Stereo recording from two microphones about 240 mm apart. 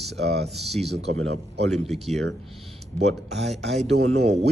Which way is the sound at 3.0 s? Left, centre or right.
Right.